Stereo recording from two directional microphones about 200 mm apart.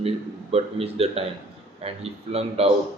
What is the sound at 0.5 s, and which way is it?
A man's voice, 30° right (ahead or behind).